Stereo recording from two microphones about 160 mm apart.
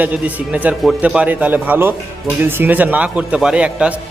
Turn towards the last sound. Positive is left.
turn(degrees=-5)  # may be behind; listen again after turning